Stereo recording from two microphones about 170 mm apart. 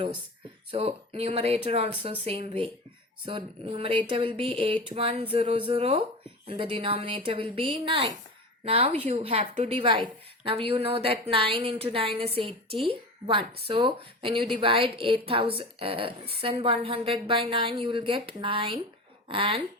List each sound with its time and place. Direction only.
0.7 s a woman's voice: 35° right (ahead or behind)